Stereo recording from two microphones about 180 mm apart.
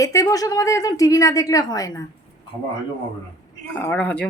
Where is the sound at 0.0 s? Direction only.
20° left (ahead or behind).